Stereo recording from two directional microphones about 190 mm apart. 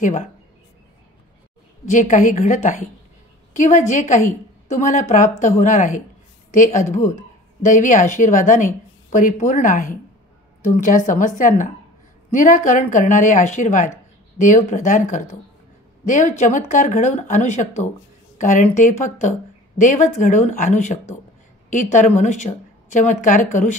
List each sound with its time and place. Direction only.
0.0 s a woman's voice: 45° left (ahead or behind)
1.9 s a woman's voice: 40° left (ahead or behind)